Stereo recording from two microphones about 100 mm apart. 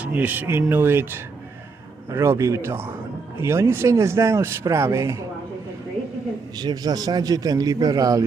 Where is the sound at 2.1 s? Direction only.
30° right (ahead or behind).